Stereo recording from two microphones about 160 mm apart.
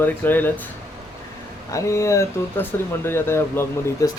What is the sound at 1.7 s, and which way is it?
Speech, 20° left (ahead or behind).